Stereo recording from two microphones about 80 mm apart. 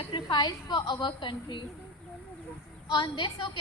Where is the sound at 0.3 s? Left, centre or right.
Left.